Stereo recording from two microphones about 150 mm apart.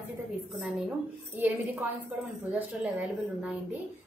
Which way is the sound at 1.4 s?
10° right (ahead or behind).